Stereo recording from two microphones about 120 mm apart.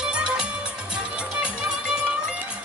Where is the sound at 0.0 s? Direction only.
5° right (ahead or behind).